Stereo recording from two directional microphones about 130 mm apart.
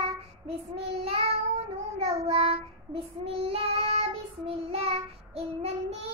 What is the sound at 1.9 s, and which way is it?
Child singing, 50° right (ahead or behind).